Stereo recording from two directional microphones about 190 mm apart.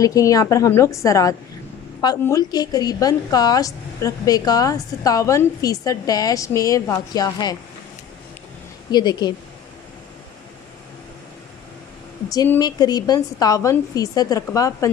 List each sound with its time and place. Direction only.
0.0 s a woman's voice: 20° left (ahead or behind)
8.9 s a woman's voice: 20° left (ahead or behind)
12.3 s a woman's voice: 20° left (ahead or behind)